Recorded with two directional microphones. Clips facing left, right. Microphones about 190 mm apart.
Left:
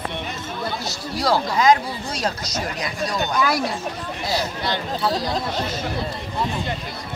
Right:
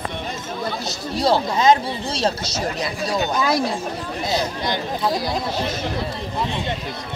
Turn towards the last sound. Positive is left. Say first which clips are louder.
# right 1 dB
turn(degrees=-10)  # may be behind; listen again after turning